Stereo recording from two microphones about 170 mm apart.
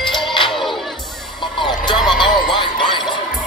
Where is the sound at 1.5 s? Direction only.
25° left (ahead or behind).